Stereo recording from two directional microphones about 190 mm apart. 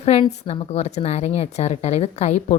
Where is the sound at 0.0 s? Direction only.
35° left (ahead or behind).